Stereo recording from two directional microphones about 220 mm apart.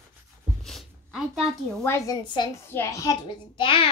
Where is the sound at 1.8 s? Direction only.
15° left (ahead or behind).